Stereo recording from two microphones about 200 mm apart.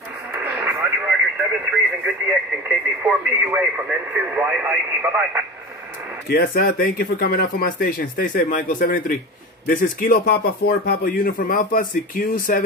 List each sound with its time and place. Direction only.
0.3 s radio: 10° right (ahead or behind)
2.2 s speech: 10° right (ahead or behind)
6.2 s a man's voice: 50° left (ahead or behind)